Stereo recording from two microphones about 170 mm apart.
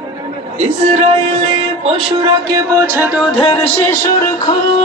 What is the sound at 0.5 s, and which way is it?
Speech, 40° right (ahead or behind).